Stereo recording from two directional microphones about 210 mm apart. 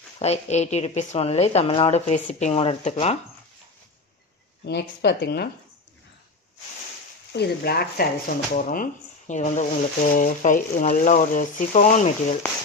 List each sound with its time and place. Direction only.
0.2 s a woman's voice: 30° left (ahead or behind)
4.6 s speech: 55° left (ahead or behind)
7.3 s a woman's voice: 50° left (ahead or behind)